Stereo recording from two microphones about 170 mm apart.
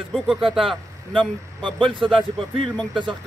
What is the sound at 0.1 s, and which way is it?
A man's voice, centre (ahead or behind).